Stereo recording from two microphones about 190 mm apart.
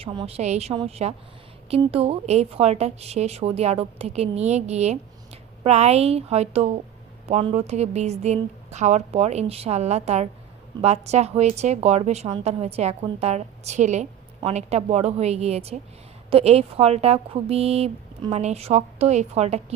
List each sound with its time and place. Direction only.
0.0 s a woman's voice: 30° right (ahead or behind)